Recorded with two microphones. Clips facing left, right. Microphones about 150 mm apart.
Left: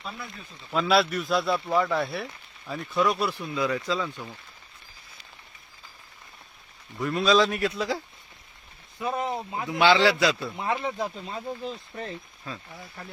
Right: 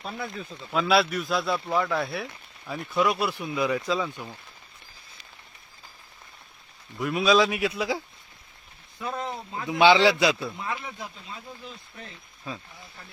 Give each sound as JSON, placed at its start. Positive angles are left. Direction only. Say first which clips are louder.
{"t": 0.7, "sound": "speech", "louder": "even", "side_deg": 0}
{"t": 7.0, "sound": "speech", "louder": "even", "side_deg": -5}
{"t": 9.0, "sound": "speech", "louder": "left 4 dB", "side_deg": 15}
{"t": 9.6, "sound": "speech", "louder": "right 2 dB", "side_deg": -20}
{"t": 10.6, "sound": "speech", "louder": "left 6 dB", "side_deg": 30}
{"t": 10.9, "sound": "speech", "louder": "left 8 dB", "side_deg": 45}
{"t": 12.5, "sound": "speech", "louder": "right 2 dB", "side_deg": -15}